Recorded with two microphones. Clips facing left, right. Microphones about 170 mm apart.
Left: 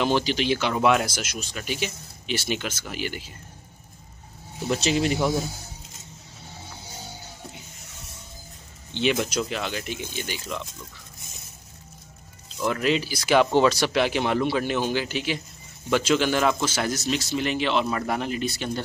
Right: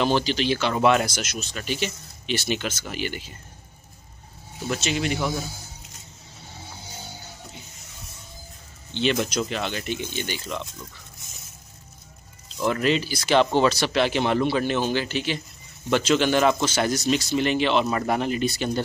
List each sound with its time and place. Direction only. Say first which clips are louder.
0.0 s speech: right 1 dB; 15° left (ahead or behind)
4.7 s speech: left 3 dB; 35° left (ahead or behind)
8.9 s speech: even; 5° left (ahead or behind)
12.5 s speech: right 1 dB; centre (ahead or behind)